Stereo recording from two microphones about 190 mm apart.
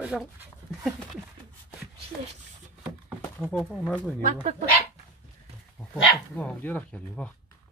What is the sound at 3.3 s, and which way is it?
Speech, centre (ahead or behind).